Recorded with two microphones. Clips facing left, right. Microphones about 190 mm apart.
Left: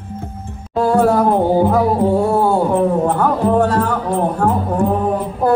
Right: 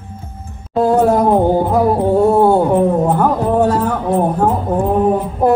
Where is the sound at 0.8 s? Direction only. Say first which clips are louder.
Right 1 dB; 20° right (ahead or behind).